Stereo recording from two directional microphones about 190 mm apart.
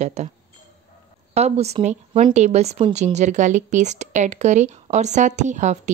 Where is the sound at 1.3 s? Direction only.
35° right (ahead or behind).